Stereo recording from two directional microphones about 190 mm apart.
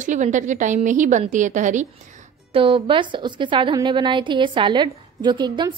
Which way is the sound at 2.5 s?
25° right (ahead or behind).